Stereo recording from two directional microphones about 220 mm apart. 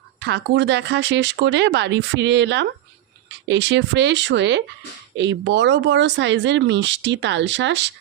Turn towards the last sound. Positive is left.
turn(degrees=-55)  # may be behind; listen again after turning